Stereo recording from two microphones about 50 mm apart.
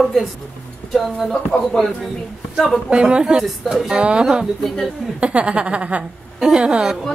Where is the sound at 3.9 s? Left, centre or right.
Centre.